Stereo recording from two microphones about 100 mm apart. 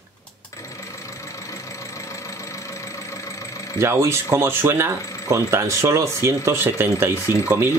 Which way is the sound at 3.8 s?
25° right (ahead or behind).